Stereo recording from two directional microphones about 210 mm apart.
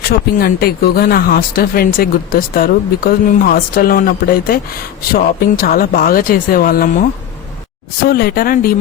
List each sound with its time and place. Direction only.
0.1 s speech: 45° left (ahead or behind)
8.0 s speech: 45° left (ahead or behind)